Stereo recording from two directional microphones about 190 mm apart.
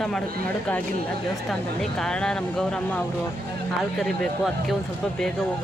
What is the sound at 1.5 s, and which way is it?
Speech, 5° left (ahead or behind).